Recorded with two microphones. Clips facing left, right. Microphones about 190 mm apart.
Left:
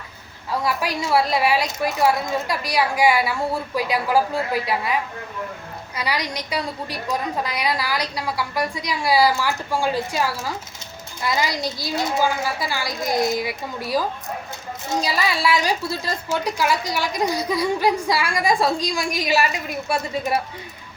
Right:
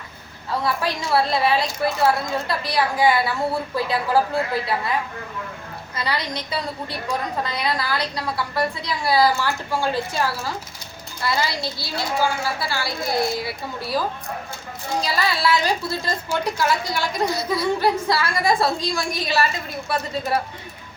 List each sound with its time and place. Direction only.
0.5 s a woman's voice: 10° left (ahead or behind)
15.0 s a woman's voice: 15° left (ahead or behind)